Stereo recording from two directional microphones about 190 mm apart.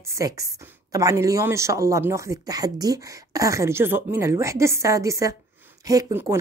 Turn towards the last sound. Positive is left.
turn(degrees=-15)  # may be behind; listen again after turning